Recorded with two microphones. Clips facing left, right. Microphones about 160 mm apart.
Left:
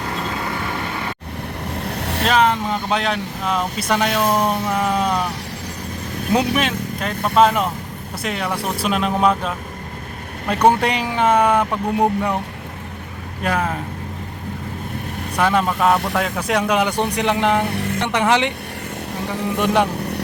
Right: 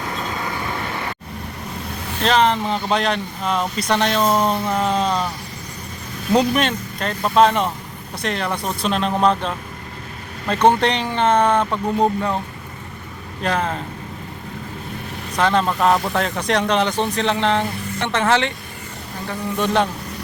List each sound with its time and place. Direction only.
2.0 s vehicle: 70° left (ahead or behind)
2.2 s speech: 5° left (ahead or behind)
6.3 s speech: 5° left (ahead or behind)
10.5 s speech: 10° left (ahead or behind)
13.4 s speech: 10° left (ahead or behind)
15.4 s speech: 10° left (ahead or behind)
17.7 s a sound: 70° left (ahead or behind)
18.0 s speech: 15° left (ahead or behind)
19.5 s speech: 15° left (ahead or behind)